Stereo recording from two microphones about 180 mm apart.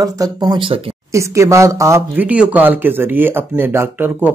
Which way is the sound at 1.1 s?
15° right (ahead or behind).